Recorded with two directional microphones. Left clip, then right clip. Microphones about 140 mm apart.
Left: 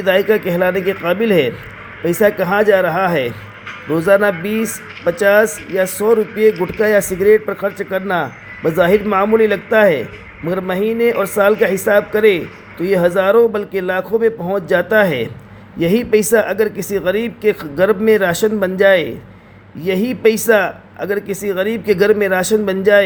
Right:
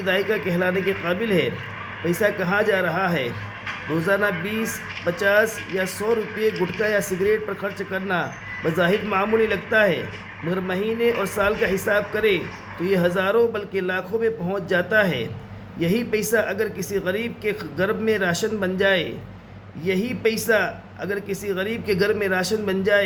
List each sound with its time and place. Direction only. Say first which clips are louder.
0.0 s speech: left 8 dB; 50° left (ahead or behind)
6.5 s speech: left 7 dB; 5° right (ahead or behind)
6.7 s speech: left 8 dB; 45° left (ahead or behind)